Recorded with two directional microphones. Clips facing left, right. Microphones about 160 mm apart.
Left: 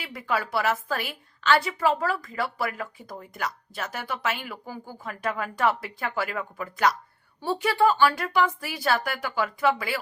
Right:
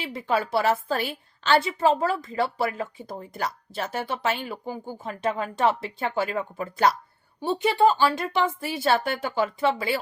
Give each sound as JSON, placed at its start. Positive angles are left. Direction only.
{"t": 0.0, "sound": "a woman's voice", "side_deg": -25}